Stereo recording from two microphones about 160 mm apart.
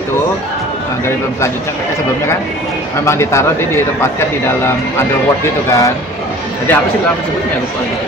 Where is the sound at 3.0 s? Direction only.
15° left (ahead or behind).